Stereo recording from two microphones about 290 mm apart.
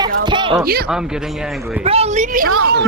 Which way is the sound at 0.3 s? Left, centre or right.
Centre.